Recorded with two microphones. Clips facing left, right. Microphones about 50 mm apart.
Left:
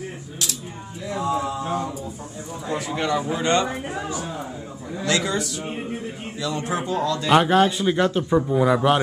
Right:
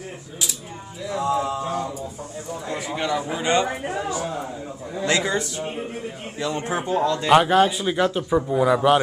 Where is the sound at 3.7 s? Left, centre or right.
Right.